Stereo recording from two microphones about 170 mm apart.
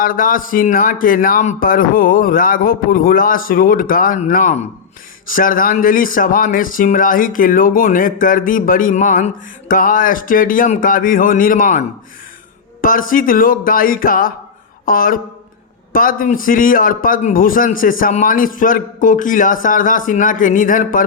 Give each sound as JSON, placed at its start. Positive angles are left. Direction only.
{"t": 0.0, "sound": "speech", "side_deg": 55}
{"t": 12.8, "sound": "speech", "side_deg": 55}